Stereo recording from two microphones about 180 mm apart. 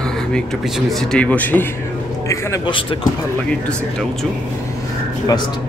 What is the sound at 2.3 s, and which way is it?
Speech, 20° left (ahead or behind).